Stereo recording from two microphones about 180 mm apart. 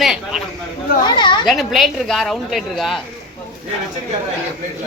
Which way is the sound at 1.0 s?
25° left (ahead or behind).